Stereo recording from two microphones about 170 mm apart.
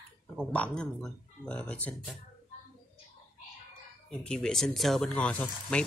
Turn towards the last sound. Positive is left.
turn(degrees=5)  # may be behind; listen again after turning